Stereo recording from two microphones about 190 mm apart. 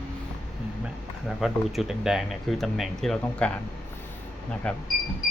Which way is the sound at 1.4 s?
Centre (ahead or behind).